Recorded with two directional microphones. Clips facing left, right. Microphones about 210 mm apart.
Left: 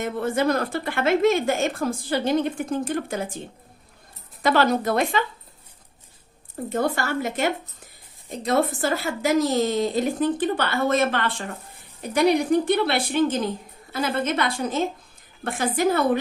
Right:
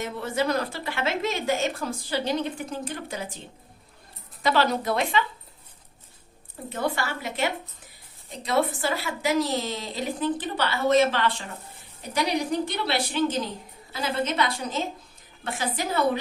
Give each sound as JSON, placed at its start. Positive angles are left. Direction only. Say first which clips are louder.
{"t": 0.0, "sound": "speech", "louder": "left 4 dB", "side_deg": 50}
{"t": 4.4, "sound": "speech", "louder": "left 3 dB", "side_deg": 50}
{"t": 6.7, "sound": "speech", "louder": "left 4 dB", "side_deg": 45}